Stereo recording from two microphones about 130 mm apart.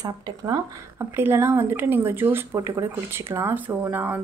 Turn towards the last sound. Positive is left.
turn(degrees=-15)  # may be behind; listen again after turning